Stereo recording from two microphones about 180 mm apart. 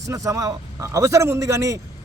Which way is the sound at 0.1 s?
20° right (ahead or behind).